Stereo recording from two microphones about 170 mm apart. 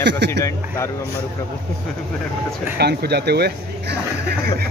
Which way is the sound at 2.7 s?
75° right (ahead or behind).